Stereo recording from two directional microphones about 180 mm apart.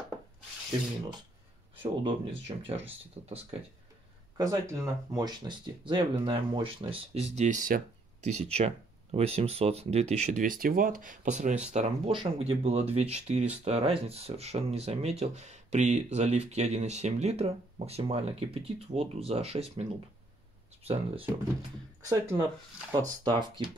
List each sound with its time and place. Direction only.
1.8 s speech: 30° right (ahead or behind)
4.4 s speech: 20° right (ahead or behind); by 7.8 s 45° right (ahead or behind)
8.4 s speech: 35° right (ahead or behind)
20.8 s speech: 35° right (ahead or behind)
22.0 s speech: 15° right (ahead or behind)